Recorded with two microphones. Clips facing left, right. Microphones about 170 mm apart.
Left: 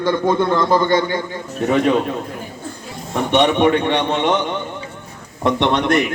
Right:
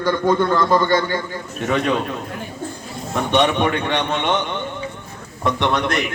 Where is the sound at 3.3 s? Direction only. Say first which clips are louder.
Left 4 dB; 20° left (ahead or behind).